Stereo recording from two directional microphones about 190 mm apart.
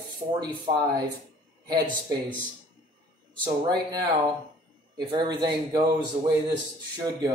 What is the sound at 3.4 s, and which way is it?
Speech, 20° right (ahead or behind).